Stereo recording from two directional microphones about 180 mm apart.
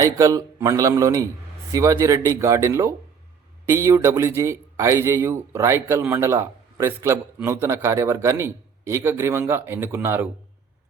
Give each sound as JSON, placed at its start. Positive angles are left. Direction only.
{"t": 0.0, "sound": "a man's voice", "side_deg": -20}